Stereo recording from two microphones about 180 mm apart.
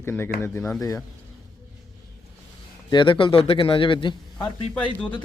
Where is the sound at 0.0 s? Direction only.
10° left (ahead or behind).